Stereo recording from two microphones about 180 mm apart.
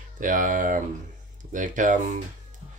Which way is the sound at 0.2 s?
45° right (ahead or behind).